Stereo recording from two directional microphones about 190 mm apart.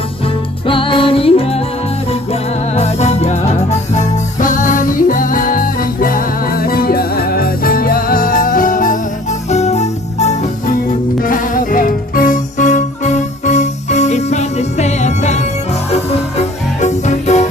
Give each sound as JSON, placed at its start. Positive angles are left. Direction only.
{"t": 0.7, "sound": "music", "side_deg": 25}
{"t": 2.7, "sound": "music", "side_deg": 35}